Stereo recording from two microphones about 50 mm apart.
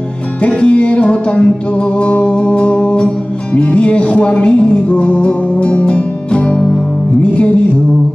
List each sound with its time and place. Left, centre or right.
0.4 s music: left